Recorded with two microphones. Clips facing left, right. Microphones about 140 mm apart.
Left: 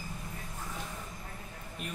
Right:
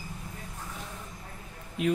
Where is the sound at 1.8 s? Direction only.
90° right.